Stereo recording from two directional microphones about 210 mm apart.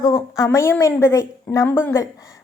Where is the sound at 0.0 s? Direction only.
15° left (ahead or behind).